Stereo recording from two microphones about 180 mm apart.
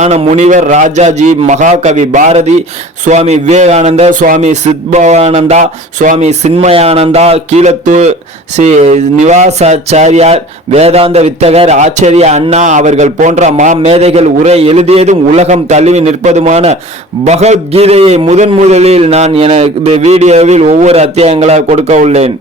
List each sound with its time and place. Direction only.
0.0 s speech: 40° right (ahead or behind)